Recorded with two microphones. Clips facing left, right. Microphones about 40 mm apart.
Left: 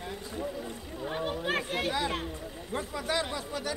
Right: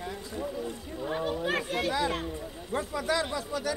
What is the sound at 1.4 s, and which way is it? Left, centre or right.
Speech, centre.